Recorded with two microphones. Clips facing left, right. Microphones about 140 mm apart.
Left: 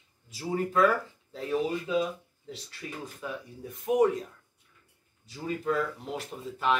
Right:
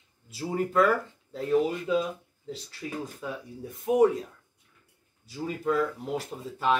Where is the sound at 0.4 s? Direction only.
5° right (ahead or behind).